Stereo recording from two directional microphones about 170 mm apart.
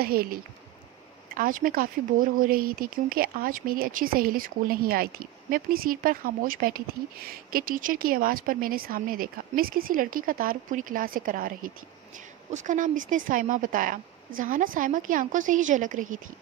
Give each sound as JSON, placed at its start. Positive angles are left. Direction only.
{"t": 0.0, "sound": "speech", "side_deg": -60}